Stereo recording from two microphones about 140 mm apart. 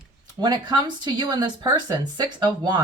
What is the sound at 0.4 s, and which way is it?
Speech, 30° right (ahead or behind).